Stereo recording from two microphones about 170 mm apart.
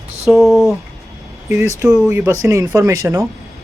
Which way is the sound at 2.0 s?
15° right (ahead or behind).